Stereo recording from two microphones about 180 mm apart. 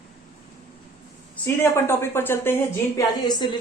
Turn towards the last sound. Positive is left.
turn(degrees=25)  # may be behind; listen again after turning